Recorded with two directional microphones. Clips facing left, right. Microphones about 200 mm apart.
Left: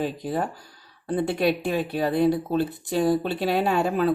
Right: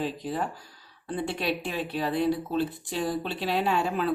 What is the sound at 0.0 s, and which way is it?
Speech, 50° left (ahead or behind).